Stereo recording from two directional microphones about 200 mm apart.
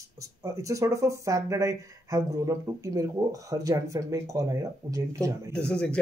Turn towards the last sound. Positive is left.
turn(degrees=5)  # may be behind; listen again after turning